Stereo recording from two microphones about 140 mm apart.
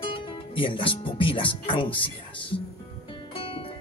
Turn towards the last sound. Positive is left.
turn(degrees=40)  # may be behind; listen again after turning